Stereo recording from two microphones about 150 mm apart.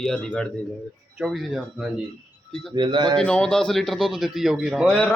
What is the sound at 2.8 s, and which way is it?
Speech, 30° right (ahead or behind).